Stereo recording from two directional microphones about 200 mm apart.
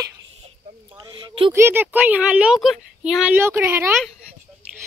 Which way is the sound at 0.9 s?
25° right (ahead or behind).